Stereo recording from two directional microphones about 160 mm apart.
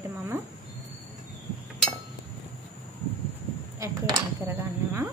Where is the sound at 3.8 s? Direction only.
20° right (ahead or behind).